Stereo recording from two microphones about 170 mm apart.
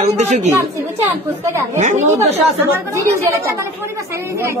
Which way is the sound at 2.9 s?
15° right (ahead or behind).